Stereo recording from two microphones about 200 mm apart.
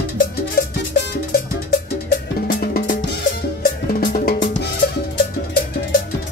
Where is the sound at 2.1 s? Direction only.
50° left (ahead or behind).